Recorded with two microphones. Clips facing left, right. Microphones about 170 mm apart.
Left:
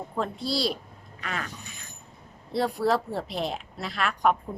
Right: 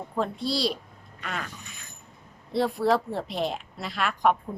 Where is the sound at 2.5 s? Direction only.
Centre (ahead or behind).